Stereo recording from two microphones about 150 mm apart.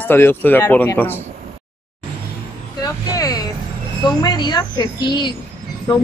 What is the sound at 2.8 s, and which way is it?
Vehicle, 25° left (ahead or behind).